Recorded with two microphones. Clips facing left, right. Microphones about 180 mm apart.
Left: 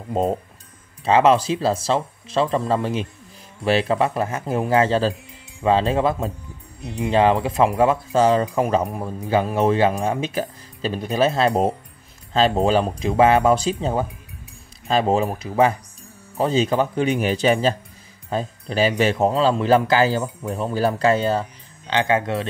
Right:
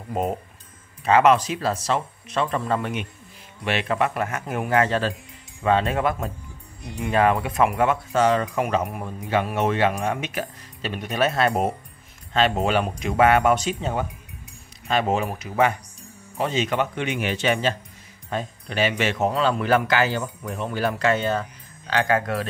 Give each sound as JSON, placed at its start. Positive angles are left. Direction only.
{"t": 0.1, "sound": "speech", "side_deg": 30}